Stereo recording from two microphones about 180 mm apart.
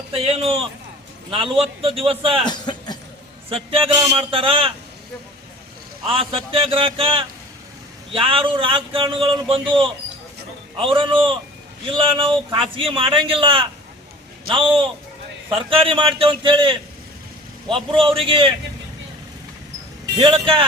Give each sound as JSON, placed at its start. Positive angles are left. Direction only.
{"t": 0.1, "sound": "a man's voice", "side_deg": -30}
{"t": 2.5, "sound": "a sound", "side_deg": 25}
{"t": 3.5, "sound": "a man's voice", "side_deg": -30}
{"t": 6.1, "sound": "a man's voice", "side_deg": -30}
{"t": 17.9, "sound": "a man's voice", "side_deg": -30}
{"t": 20.1, "sound": "a man's voice", "side_deg": -30}